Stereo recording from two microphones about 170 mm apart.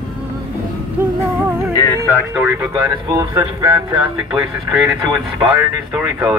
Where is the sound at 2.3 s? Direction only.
15° right (ahead or behind).